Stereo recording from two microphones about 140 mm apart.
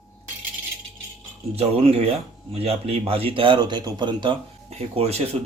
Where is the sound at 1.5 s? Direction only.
45° right (ahead or behind).